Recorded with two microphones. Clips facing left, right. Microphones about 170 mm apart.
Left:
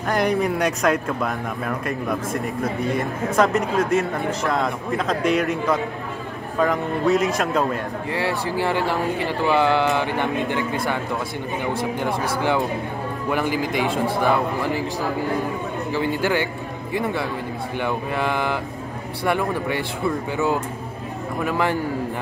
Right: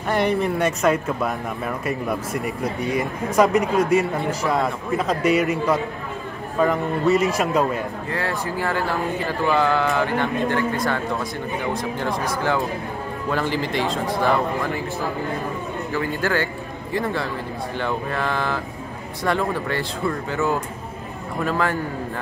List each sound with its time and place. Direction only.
0.1 s speech: 5° right (ahead or behind)
8.6 s speech: 20° left (ahead or behind)
12.3 s speech: 20° left (ahead or behind)
17.7 s speech: 15° left (ahead or behind)